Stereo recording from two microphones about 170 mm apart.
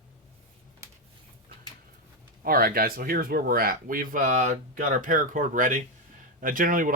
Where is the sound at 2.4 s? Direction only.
60° right (ahead or behind).